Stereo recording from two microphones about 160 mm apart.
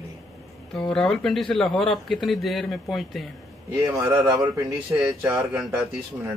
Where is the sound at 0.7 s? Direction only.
5° left (ahead or behind).